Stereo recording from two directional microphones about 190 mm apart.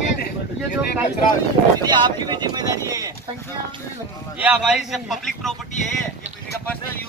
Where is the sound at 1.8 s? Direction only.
25° right (ahead or behind).